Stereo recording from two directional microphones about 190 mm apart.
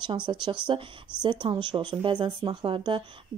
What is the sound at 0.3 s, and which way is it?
A woman's voice, 30° right (ahead or behind).